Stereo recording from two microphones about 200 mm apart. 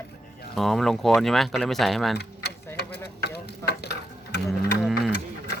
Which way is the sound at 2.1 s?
55° left (ahead or behind).